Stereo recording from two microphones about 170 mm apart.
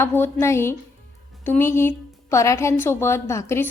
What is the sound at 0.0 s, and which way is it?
A woman's voice, 15° left (ahead or behind).